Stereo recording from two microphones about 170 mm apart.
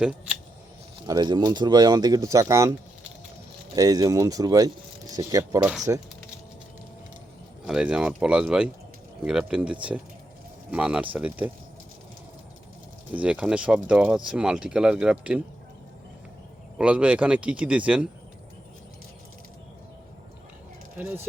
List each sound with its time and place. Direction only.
1.0 s speech: 25° right (ahead or behind)
3.8 s speech: 20° right (ahead or behind)
7.7 s speech: 5° right (ahead or behind)
13.1 s speech: 5° right (ahead or behind)
16.7 s speech: 5° right (ahead or behind)